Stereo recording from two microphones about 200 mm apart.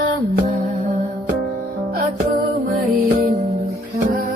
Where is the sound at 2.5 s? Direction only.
50° right (ahead or behind).